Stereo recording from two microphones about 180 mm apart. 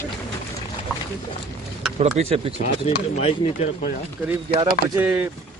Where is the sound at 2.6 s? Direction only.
35° left (ahead or behind).